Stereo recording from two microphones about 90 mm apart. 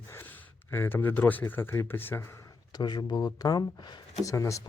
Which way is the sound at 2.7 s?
50° left (ahead or behind).